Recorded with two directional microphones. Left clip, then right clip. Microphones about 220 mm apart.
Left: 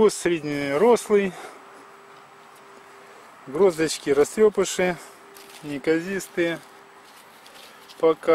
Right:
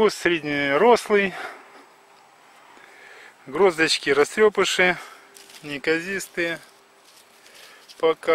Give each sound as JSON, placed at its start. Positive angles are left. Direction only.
{"t": 0.0, "sound": "speech", "side_deg": -5}
{"t": 3.5, "sound": "speech", "side_deg": -20}
{"t": 4.6, "sound": "speech", "side_deg": -5}
{"t": 5.5, "sound": "a sound", "side_deg": -5}
{"t": 5.9, "sound": "speech", "side_deg": -20}
{"t": 8.0, "sound": "speech", "side_deg": -20}